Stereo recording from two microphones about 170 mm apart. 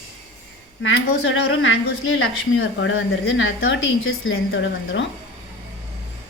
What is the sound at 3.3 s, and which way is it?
Speech, 90° left.